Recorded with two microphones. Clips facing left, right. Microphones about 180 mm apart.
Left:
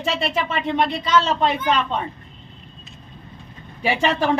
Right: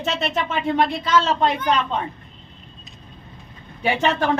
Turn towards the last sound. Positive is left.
turn(degrees=5)  # may be behind; listen again after turning